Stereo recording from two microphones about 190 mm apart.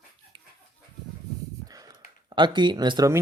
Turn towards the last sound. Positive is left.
turn(degrees=-20)  # may be behind; listen again after turning